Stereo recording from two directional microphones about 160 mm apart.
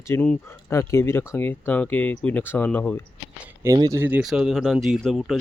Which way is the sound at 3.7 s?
25° right (ahead or behind).